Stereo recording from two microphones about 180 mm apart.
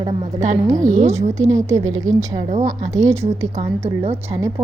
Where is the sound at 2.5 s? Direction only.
40° right (ahead or behind).